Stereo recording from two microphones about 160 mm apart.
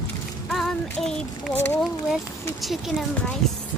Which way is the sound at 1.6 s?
10° left (ahead or behind).